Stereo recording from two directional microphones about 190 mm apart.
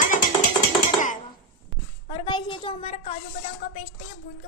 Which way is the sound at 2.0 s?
25° left (ahead or behind).